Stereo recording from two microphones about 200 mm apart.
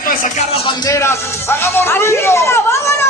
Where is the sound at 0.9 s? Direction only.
15° left (ahead or behind).